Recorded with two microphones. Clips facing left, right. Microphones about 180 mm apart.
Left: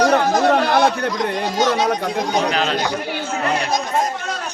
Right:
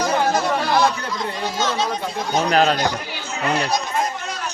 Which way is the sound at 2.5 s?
45° right (ahead or behind).